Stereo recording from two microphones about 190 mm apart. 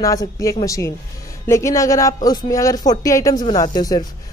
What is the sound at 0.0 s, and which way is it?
A woman's voice, 20° left (ahead or behind).